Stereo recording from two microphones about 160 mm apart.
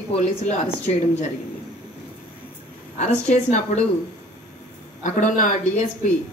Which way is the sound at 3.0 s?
45° left (ahead or behind).